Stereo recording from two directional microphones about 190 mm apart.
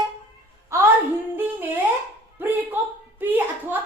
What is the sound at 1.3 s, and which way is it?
A woman's voice, 10° right (ahead or behind).